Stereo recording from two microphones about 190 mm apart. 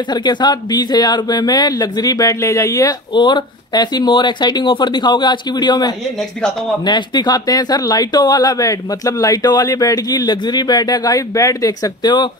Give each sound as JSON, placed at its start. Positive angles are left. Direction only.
{"t": 0.1, "sound": "speech", "side_deg": 20}